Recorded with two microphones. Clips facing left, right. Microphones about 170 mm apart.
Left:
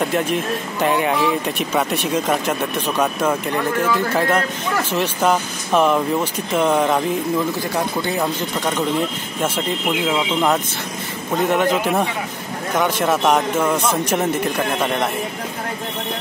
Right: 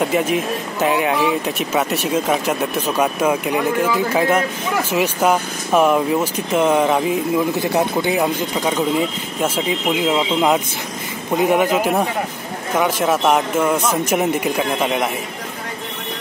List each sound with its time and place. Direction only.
0.0 s speech: 5° right (ahead or behind)